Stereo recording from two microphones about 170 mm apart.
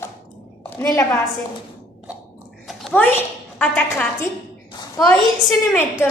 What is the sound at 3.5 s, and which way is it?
Speech, 10° left (ahead or behind).